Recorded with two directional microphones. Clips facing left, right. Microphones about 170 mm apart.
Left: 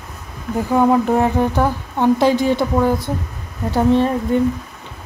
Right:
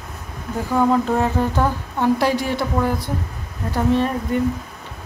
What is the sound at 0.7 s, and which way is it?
A woman's voice, 15° left (ahead or behind).